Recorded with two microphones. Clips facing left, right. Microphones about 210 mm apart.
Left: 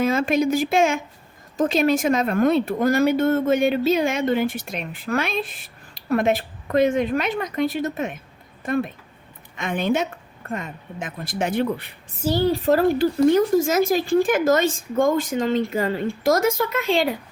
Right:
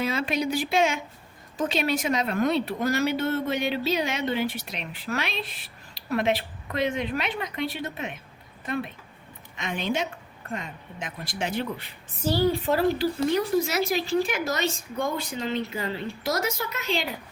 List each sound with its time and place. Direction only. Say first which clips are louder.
0.0 s speech: left 7 dB; 45° left (ahead or behind)
12.5 s speech: left 7 dB; 40° left (ahead or behind)